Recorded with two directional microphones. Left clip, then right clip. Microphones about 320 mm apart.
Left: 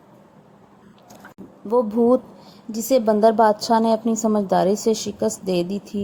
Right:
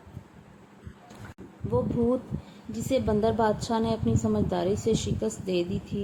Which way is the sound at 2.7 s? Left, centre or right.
Centre.